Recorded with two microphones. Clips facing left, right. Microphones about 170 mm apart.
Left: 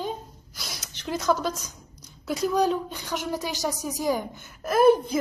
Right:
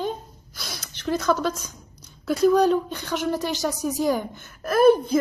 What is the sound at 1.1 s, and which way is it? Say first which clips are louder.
Speech: right 3 dB; 15° left (ahead or behind).